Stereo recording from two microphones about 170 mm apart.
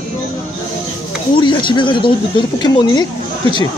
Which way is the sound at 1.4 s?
30° left (ahead or behind).